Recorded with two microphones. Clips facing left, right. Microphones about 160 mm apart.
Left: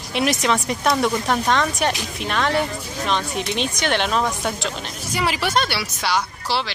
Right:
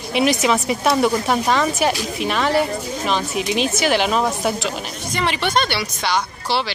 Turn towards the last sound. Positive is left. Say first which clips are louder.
# right 2 dB
turn(degrees=5)  # may be behind; listen again after turning